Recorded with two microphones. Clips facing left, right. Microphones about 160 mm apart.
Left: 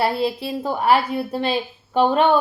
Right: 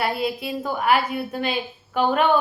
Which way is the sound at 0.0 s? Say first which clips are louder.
Left 3 dB; 30° left (ahead or behind).